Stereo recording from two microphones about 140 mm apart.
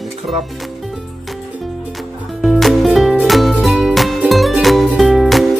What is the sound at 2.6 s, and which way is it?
Music, centre (ahead or behind).